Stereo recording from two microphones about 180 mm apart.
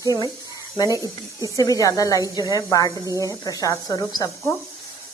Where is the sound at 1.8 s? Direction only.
20° left (ahead or behind).